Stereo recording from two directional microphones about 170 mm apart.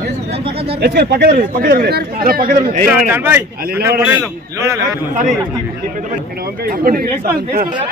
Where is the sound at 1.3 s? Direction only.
55° right (ahead or behind).